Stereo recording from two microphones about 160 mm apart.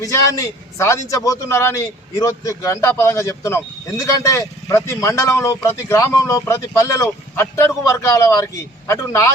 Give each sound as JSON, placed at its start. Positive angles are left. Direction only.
{"t": 0.0, "sound": "a man's voice", "side_deg": 20}